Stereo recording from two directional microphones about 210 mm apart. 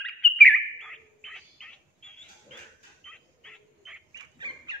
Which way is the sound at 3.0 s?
5° left (ahead or behind).